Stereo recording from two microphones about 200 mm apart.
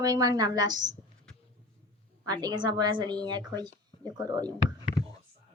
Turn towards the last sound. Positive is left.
turn(degrees=-20)  # may be behind; listen again after turning